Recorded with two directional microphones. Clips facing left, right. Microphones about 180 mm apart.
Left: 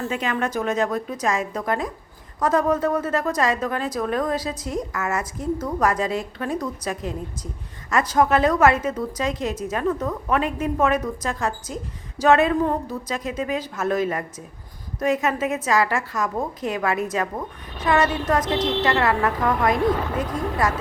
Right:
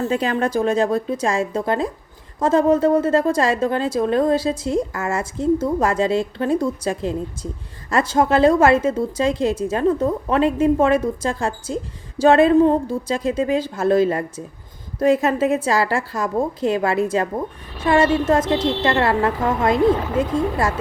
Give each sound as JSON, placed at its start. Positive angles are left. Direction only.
{"t": 0.1, "sound": "a woman's voice", "side_deg": -35}